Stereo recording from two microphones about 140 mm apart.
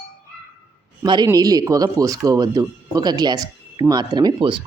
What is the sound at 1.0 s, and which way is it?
Speech, 30° right (ahead or behind).